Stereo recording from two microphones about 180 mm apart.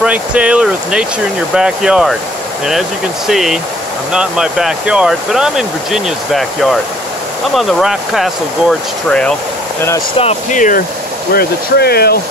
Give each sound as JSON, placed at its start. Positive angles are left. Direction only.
{"t": 0.0, "sound": "speech", "side_deg": -5}
{"t": 3.3, "sound": "speech", "side_deg": 0}
{"t": 9.8, "sound": "speech", "side_deg": 15}
{"t": 10.1, "sound": "speech", "side_deg": 40}
{"t": 11.3, "sound": "speech", "side_deg": 60}